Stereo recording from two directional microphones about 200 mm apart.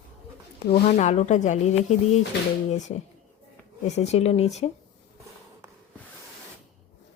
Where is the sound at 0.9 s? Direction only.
35° left (ahead or behind).